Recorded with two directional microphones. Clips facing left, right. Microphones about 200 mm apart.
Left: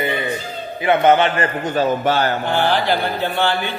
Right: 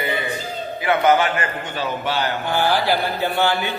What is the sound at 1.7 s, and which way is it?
Speech, 45° left (ahead or behind).